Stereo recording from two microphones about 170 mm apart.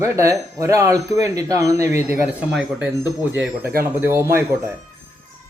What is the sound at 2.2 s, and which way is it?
Speech, 5° right (ahead or behind).